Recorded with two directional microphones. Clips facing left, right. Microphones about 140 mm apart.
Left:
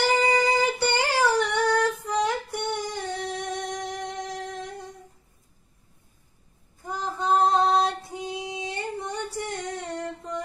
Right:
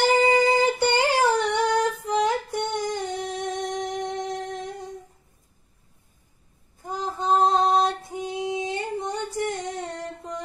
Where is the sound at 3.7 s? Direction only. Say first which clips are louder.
Right 4 dB; 20° right (ahead or behind).